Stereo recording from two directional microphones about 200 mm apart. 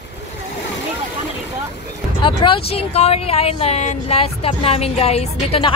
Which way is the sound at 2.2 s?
25° left (ahead or behind).